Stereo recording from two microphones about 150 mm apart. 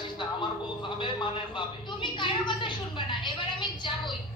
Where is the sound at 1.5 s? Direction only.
30° left (ahead or behind).